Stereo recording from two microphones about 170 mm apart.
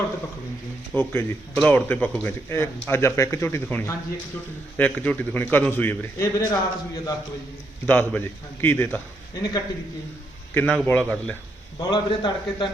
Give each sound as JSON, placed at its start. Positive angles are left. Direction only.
{"t": 0.9, "sound": "a man's voice", "side_deg": 15}
{"t": 7.9, "sound": "speech", "side_deg": 10}
{"t": 10.5, "sound": "speech", "side_deg": 10}
{"t": 11.8, "sound": "a man's voice", "side_deg": 25}